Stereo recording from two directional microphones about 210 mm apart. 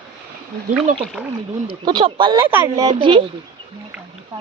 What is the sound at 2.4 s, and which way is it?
Speech, 10° right (ahead or behind).